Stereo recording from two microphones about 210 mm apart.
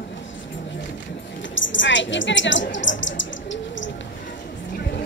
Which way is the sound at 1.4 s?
60° left (ahead or behind).